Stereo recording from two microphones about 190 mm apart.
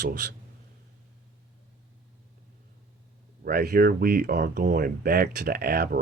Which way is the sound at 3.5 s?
50° right (ahead or behind).